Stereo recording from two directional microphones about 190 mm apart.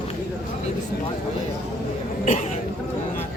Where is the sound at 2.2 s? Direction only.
40° left (ahead or behind).